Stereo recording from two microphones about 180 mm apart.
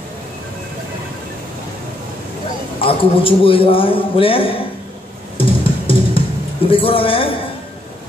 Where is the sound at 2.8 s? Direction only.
30° left (ahead or behind).